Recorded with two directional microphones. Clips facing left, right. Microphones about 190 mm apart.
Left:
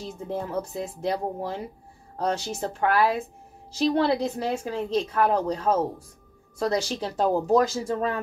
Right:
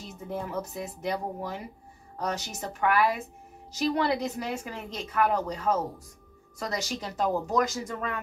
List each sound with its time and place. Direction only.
0.3 s a woman's voice: 30° left (ahead or behind)